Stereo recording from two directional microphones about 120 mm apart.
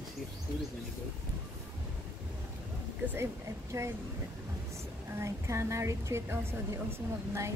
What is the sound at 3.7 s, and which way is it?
Speech, 25° right (ahead or behind).